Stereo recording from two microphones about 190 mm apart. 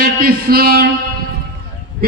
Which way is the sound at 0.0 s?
50° right (ahead or behind).